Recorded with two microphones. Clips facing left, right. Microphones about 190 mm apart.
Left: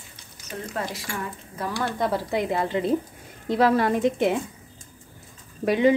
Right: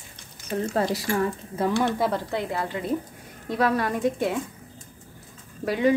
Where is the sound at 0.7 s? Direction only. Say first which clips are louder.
Right 5 dB; 35° right (ahead or behind).